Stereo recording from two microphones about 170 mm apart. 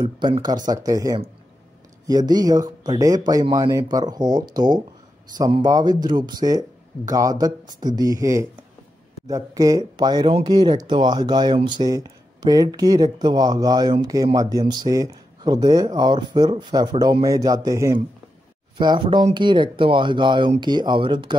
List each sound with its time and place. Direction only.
0.0 s speech: 30° right (ahead or behind)